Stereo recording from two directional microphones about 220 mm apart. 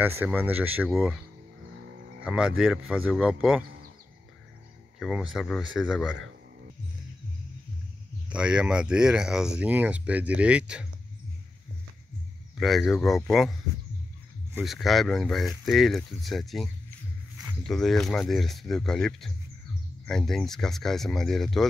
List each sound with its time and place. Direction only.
0.0 s speech: 10° right (ahead or behind)
1.8 s a sound: 55° right (ahead or behind)
2.2 s speech: 5° right (ahead or behind)
4.9 s speech: centre (ahead or behind)
8.3 s speech: 5° right (ahead or behind)
12.5 s speech: centre (ahead or behind)